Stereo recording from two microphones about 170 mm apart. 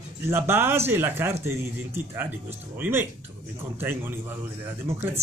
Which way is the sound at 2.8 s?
15° right (ahead or behind).